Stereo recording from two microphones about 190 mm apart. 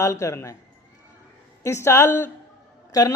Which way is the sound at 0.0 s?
15° left (ahead or behind).